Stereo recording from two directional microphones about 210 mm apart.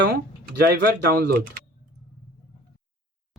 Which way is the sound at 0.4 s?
50° right (ahead or behind).